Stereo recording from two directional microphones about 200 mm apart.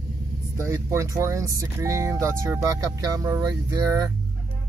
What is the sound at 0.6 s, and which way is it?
Speech, 15° right (ahead or behind).